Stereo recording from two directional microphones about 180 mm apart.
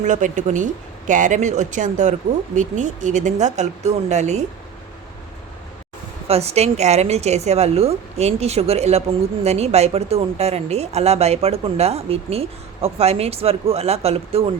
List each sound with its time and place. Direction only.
0.0 s speech: 45° right (ahead or behind)
6.2 s speech: 35° right (ahead or behind)